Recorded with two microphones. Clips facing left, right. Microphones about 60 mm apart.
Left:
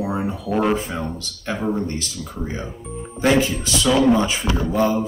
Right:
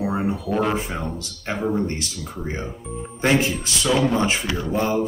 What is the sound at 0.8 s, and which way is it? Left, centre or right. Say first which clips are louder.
Speech: left 1 dB; right.